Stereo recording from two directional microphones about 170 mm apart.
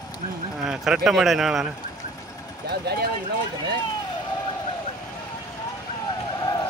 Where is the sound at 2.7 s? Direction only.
70° right (ahead or behind).